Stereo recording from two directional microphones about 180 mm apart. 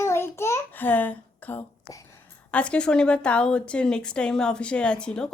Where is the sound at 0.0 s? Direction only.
15° left (ahead or behind).